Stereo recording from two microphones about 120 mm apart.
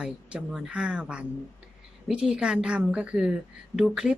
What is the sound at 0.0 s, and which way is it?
A woman's voice, 10° right (ahead or behind).